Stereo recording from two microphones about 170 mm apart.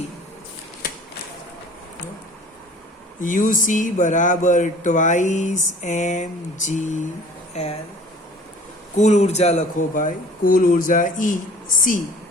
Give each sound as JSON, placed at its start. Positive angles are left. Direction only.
{"t": 3.2, "sound": "speech", "side_deg": 50}
{"t": 9.0, "sound": "speech", "side_deg": 40}